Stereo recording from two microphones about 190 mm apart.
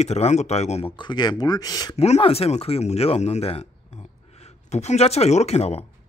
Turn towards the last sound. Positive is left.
turn(degrees=35)  # may be behind; listen again after turning